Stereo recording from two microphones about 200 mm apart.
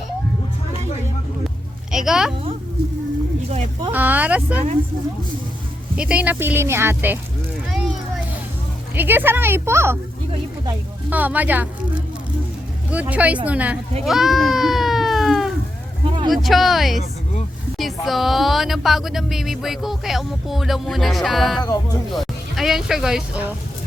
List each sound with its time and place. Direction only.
1.9 s a sound: 5° right (ahead or behind)
3.5 s speech: 35° right (ahead or behind)
3.9 s speech: 10° right (ahead or behind)
6.0 s speech: 5° right (ahead or behind)
9.0 s speech: 10° right (ahead or behind)
11.1 s speech: 10° right (ahead or behind)
12.9 s speech: 5° right (ahead or behind)
14.0 s sheep: centre (ahead or behind)
16.0 s a sound: 25° right (ahead or behind)
16.3 s speech: centre (ahead or behind)